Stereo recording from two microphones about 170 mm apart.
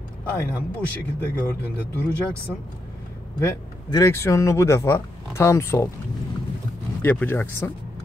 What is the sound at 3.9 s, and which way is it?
Speech, 20° left (ahead or behind).